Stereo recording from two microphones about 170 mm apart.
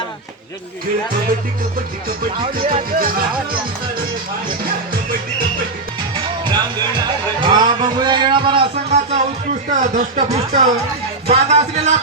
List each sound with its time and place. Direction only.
2.9 s speech: 60° right (ahead or behind)
6.1 s music: 25° right (ahead or behind)
8.7 s speech: 40° right (ahead or behind)